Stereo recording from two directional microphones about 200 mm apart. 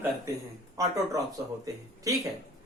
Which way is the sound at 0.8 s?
15° right (ahead or behind).